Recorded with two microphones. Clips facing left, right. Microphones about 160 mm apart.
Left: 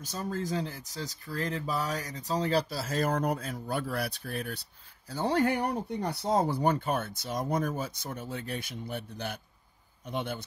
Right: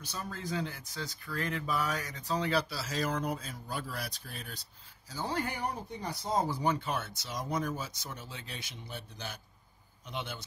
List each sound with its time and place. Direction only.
0.0 s speech: 40° left (ahead or behind)